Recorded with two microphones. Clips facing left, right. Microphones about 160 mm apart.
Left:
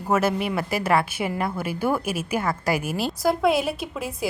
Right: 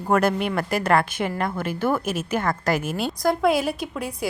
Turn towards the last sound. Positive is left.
turn(degrees=0)  # may be behind; listen again after turning